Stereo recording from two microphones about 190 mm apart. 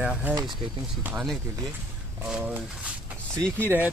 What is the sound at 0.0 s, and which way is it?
Speech, 5° right (ahead or behind).